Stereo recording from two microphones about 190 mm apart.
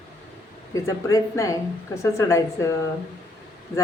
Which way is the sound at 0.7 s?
15° left (ahead or behind).